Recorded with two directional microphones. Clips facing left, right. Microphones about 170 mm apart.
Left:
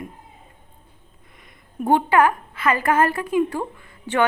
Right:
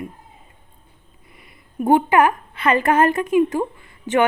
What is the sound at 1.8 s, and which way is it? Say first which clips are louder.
A woman's voice: right 2 dB; 15° right (ahead or behind).